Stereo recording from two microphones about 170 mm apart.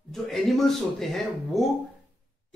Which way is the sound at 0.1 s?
Centre (ahead or behind).